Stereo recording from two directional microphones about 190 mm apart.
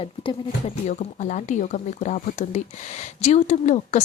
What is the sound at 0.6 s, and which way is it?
A woman's voice, 40° left (ahead or behind).